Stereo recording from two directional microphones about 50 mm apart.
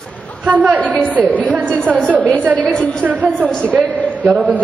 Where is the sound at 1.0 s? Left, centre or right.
Right.